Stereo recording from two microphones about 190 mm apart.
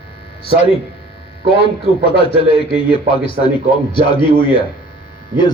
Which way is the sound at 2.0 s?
30° left (ahead or behind).